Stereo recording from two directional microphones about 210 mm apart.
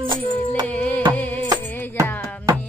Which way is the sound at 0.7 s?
5° left (ahead or behind).